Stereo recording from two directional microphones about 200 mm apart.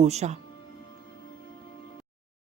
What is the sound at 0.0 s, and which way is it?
Speech, 35° right (ahead or behind).